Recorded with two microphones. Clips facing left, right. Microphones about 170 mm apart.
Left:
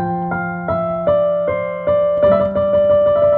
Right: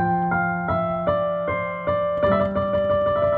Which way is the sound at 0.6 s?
50° left (ahead or behind).